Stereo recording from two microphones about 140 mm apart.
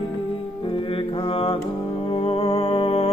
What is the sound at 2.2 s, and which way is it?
Music, 45° left (ahead or behind).